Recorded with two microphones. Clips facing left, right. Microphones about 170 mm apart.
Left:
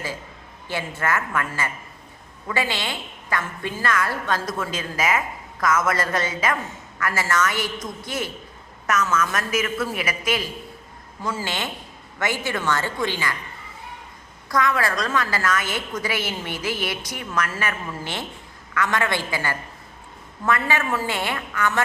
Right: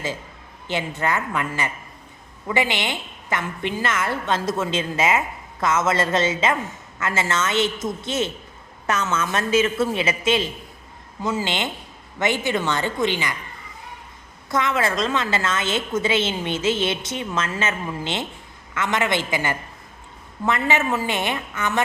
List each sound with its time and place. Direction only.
0.7 s a woman's voice: 20° right (ahead or behind)
14.5 s a woman's voice: 25° right (ahead or behind)